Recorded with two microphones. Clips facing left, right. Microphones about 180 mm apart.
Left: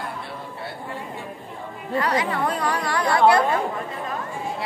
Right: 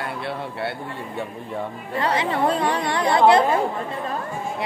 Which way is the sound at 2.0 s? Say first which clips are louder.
Right 3 dB; 25° right (ahead or behind).